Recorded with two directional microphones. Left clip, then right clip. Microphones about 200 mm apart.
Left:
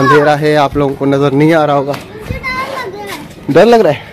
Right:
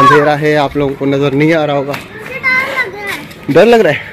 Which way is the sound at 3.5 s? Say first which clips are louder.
Even; centre (ahead or behind).